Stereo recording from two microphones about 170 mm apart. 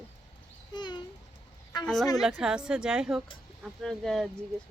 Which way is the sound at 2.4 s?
5° right (ahead or behind).